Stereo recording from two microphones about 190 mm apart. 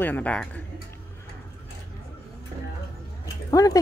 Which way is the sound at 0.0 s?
10° left (ahead or behind).